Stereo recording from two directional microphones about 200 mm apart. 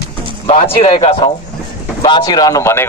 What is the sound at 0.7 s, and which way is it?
A man's voice, 30° left (ahead or behind).